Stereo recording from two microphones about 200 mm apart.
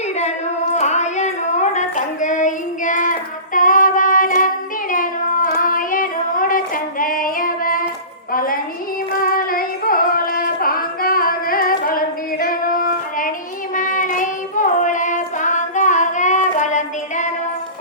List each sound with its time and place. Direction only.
0.8 s child singing: 35° left (ahead or behind)
7.0 s female singing: 45° left (ahead or behind)
8.3 s music: 45° left (ahead or behind)
9.2 s singing: 45° left (ahead or behind)
13.7 s child singing: 40° left (ahead or behind)